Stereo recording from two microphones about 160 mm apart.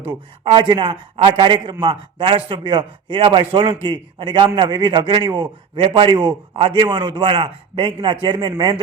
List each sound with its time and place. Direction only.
0.4 s a man's voice: 30° right (ahead or behind)